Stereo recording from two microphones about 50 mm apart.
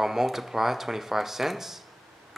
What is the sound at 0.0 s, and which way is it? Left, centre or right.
Speech, centre.